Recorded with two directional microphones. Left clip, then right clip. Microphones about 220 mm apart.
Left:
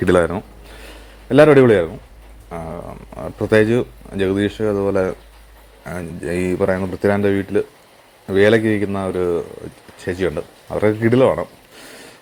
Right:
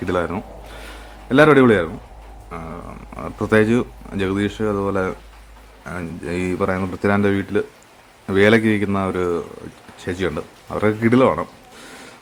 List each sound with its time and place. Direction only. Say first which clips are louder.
0.0 s speech: left 7 dB; 20° left (ahead or behind)
0.3 s a sound: left 2 dB; centre (ahead or behind)
2.5 s speech: left 4 dB; 5° left (ahead or behind)